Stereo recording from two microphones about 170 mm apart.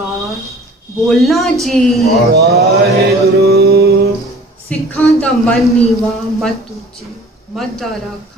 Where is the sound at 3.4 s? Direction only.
65° right (ahead or behind).